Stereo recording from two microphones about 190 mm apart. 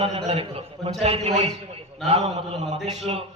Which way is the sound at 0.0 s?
30° right (ahead or behind).